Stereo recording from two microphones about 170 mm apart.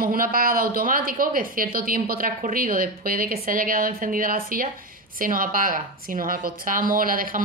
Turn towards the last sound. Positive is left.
turn(degrees=-55)  # may be behind; listen again after turning